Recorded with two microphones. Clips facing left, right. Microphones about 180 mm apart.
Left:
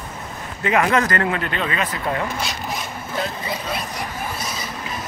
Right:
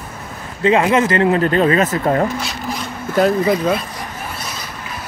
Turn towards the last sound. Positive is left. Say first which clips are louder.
# right 13 dB
turn(degrees=-55)  # may be behind; listen again after turning